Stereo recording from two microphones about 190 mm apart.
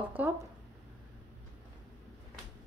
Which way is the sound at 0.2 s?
10° right (ahead or behind).